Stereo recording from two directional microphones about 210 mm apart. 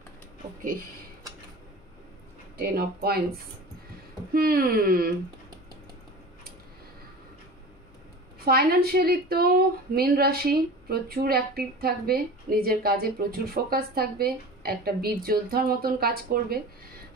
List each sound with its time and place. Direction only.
2.5 s a woman's voice: 50° right (ahead or behind)
4.3 s a woman's voice: 45° right (ahead or behind)
8.5 s a woman's voice: 45° right (ahead or behind)